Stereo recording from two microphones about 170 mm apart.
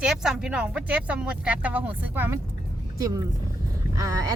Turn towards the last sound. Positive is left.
turn(degrees=-20)  # may be behind; listen again after turning